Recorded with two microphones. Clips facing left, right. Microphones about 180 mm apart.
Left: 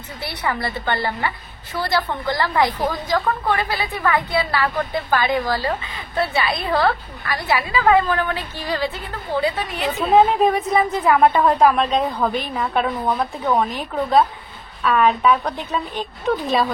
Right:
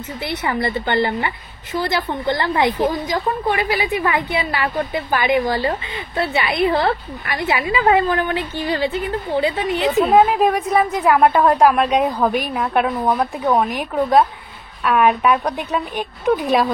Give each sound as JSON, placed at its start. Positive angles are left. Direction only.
{"t": 0.2, "sound": "a woman's voice", "side_deg": -20}
{"t": 10.1, "sound": "a woman's voice", "side_deg": -5}